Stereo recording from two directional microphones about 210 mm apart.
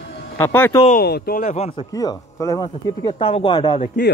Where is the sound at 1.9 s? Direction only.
15° left (ahead or behind).